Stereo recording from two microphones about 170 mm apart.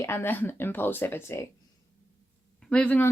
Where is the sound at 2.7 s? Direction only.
5° left (ahead or behind).